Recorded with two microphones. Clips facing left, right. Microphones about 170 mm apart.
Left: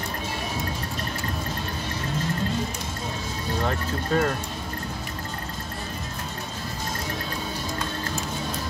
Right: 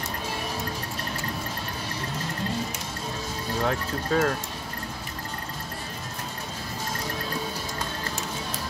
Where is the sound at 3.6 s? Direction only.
Centre (ahead or behind).